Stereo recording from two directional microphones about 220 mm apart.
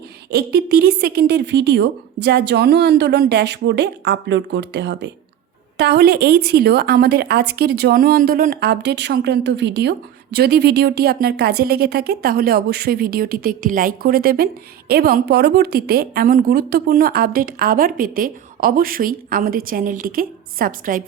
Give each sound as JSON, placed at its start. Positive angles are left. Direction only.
{"t": 0.3, "sound": "speech", "side_deg": -45}